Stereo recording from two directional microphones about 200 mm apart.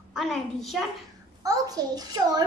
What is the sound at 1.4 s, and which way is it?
A child's voice, 20° right (ahead or behind).